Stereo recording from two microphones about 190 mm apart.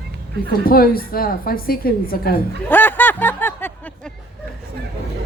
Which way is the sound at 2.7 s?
10° left (ahead or behind).